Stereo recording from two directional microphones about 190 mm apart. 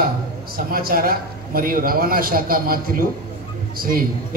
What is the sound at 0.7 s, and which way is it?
A man's voice, 50° right (ahead or behind).